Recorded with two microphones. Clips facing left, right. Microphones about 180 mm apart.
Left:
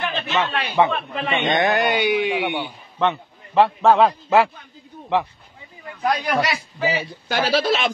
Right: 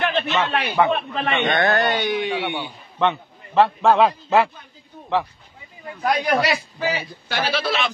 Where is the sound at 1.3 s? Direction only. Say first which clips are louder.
Even; 15° left (ahead or behind).